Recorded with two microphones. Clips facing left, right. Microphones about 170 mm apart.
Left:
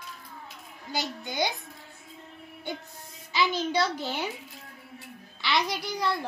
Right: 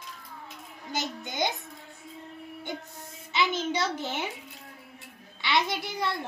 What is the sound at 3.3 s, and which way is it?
A child's voice, 20° right (ahead or behind).